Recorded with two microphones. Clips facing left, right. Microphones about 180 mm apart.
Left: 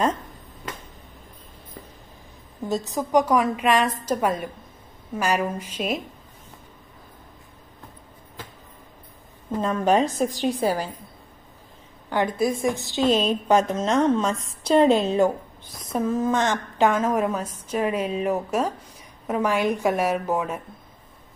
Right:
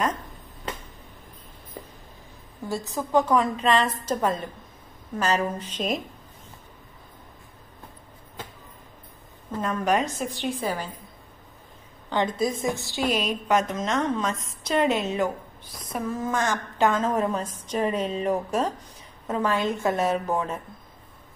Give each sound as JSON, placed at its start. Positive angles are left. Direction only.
{"t": 2.7, "sound": "a woman's voice", "side_deg": 20}
{"t": 9.6, "sound": "a woman's voice", "side_deg": 25}
{"t": 12.1, "sound": "a woman's voice", "side_deg": 10}